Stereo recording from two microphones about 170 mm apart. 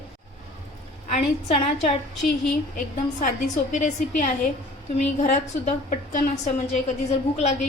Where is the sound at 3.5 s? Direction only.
45° left (ahead or behind).